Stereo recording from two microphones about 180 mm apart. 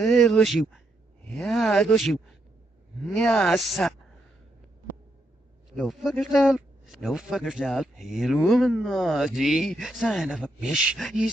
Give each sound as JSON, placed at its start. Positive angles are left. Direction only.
{"t": 0.0, "sound": "speech", "side_deg": 0}
{"t": 5.7, "sound": "a man's voice", "side_deg": 0}